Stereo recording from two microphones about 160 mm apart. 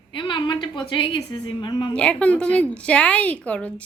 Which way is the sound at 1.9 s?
5° left (ahead or behind).